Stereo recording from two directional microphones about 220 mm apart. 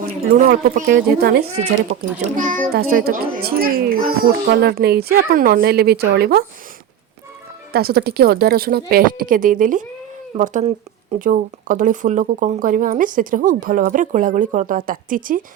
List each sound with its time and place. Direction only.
0.3 s a child's voice: 40° right (ahead or behind)
1.5 s a child's voice: 30° right (ahead or behind); by 6.4 s 45° right (ahead or behind)
7.7 s a child's voice: 45° right (ahead or behind)